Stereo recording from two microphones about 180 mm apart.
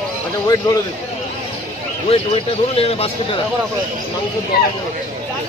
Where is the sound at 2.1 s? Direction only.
30° left (ahead or behind).